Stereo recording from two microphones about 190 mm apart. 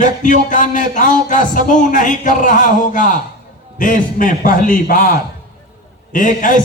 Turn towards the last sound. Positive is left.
turn(degrees=45)  # may be behind; listen again after turning